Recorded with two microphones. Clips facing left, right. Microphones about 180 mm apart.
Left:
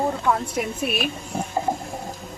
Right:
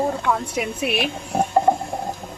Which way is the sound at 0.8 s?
70° right (ahead or behind).